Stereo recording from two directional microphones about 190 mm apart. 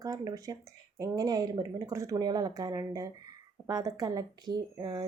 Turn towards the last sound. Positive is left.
turn(degrees=-20)  # may be behind; listen again after turning